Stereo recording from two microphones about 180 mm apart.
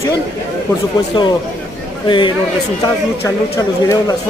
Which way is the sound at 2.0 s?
25° left (ahead or behind).